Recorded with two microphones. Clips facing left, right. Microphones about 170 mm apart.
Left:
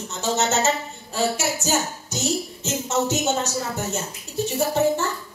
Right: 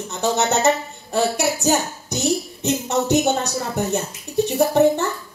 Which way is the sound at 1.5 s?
65° right (ahead or behind).